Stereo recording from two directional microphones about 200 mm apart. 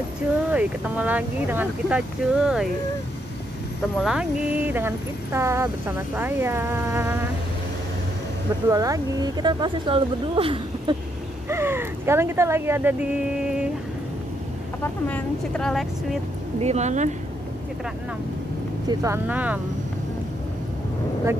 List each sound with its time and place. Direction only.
0.5 s speech: 5° right (ahead or behind)
4.0 s speech: 5° right (ahead or behind)
8.6 s speech: 15° right (ahead or behind)
11.4 s speech: 10° right (ahead or behind)
13.4 s a sound: 5° right (ahead or behind)
14.8 s speech: 10° left (ahead or behind)
16.5 s speech: 35° right (ahead or behind)
18.9 s speech: 15° right (ahead or behind)